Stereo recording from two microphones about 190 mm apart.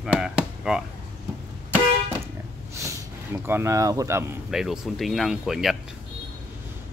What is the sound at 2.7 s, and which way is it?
Speech, 15° right (ahead or behind).